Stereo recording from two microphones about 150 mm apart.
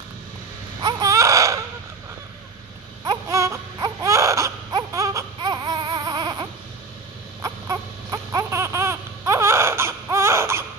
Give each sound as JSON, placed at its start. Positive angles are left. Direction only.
{"t": 0.7, "sound": "baby cry", "side_deg": -25}
{"t": 3.1, "sound": "baby cry", "side_deg": -20}